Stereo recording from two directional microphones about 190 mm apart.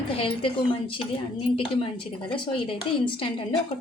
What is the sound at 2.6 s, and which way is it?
Speech, 25° left (ahead or behind).